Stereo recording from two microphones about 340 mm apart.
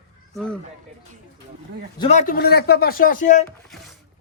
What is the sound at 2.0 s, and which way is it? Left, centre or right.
A man's voice, left.